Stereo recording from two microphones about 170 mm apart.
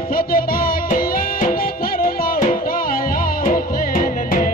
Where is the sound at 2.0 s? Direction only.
50° left (ahead or behind).